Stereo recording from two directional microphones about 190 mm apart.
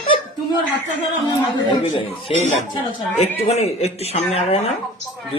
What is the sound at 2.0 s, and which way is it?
Speech, 35° left (ahead or behind).